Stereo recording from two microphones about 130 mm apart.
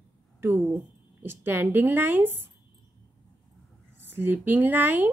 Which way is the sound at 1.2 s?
15° right (ahead or behind).